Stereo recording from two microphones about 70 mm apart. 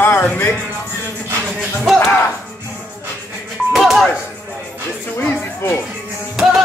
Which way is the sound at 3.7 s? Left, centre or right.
Centre.